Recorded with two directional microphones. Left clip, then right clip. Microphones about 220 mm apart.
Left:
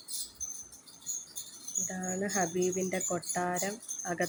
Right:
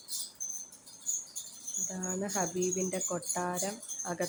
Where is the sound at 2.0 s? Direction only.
Centre (ahead or behind).